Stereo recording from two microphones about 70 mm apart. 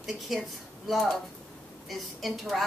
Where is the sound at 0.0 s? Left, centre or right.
Centre.